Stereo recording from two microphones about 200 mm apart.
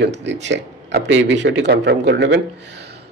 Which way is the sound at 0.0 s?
60° right (ahead or behind).